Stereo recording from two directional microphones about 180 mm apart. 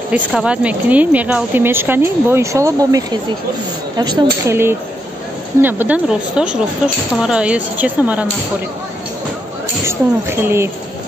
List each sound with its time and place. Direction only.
0.1 s a woman's voice: 5° right (ahead or behind); by 4.6 s 25° right (ahead or behind)
5.6 s a woman's voice: 10° right (ahead or behind)
9.8 s a woman's voice: 15° right (ahead or behind)